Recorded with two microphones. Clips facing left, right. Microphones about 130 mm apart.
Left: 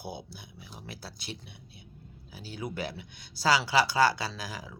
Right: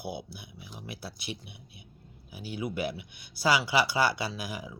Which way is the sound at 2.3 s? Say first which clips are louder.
Right 3 dB; 15° right (ahead or behind).